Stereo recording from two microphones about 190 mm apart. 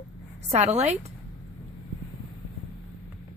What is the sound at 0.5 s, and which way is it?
Speech, 35° right (ahead or behind).